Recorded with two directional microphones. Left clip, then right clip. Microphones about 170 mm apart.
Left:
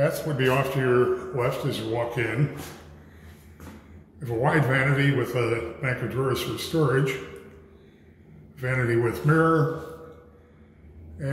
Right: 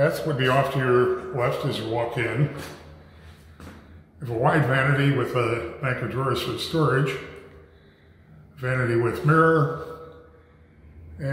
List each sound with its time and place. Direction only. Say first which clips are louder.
0.0 s a man's voice: right 2 dB; 10° right (ahead or behind)
4.2 s a man's voice: right 2 dB; centre (ahead or behind)
8.5 s a man's voice: right 1 dB; centre (ahead or behind)
11.2 s speech: right 1 dB; centre (ahead or behind)